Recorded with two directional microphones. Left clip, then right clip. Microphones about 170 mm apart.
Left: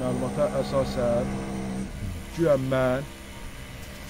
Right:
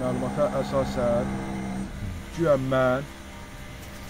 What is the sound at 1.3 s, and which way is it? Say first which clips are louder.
Speech: right 1 dB; 20° left (ahead or behind).